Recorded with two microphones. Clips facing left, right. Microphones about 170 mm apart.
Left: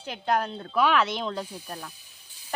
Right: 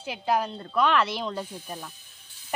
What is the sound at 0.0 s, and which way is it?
A woman's voice, 5° right (ahead or behind).